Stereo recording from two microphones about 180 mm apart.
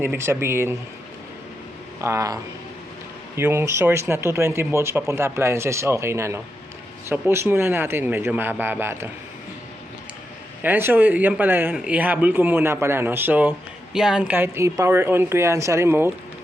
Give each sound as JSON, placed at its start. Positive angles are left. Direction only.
{"t": 0.0, "sound": "speech", "side_deg": -15}
{"t": 2.0, "sound": "speech", "side_deg": -15}
{"t": 10.6, "sound": "speech", "side_deg": -10}